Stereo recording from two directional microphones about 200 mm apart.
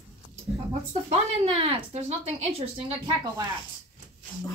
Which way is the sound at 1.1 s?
30° right (ahead or behind).